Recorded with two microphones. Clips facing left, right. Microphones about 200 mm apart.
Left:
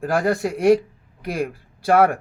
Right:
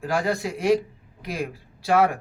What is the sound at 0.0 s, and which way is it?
Speech, 55° left (ahead or behind).